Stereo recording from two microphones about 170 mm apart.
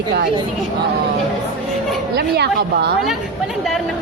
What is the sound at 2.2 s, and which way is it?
Speech, 75° right (ahead or behind).